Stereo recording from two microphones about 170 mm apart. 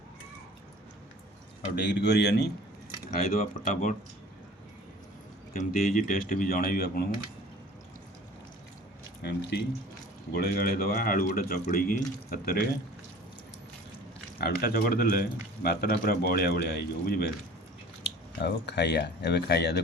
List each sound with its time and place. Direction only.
1.7 s speech: 90° left
3.1 s speech: 55° left (ahead or behind)
5.5 s speech: 55° left (ahead or behind)
9.2 s speech: 75° left (ahead or behind)
10.3 s speech: 65° left (ahead or behind)
14.3 s speech: 65° left (ahead or behind)
18.0 s speech: 90° left